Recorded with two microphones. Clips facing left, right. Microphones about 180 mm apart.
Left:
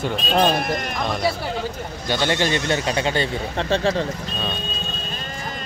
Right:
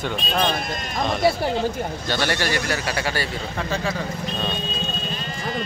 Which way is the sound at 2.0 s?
20° left (ahead or behind).